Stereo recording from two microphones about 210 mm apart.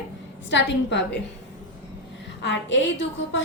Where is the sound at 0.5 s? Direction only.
55° left (ahead or behind).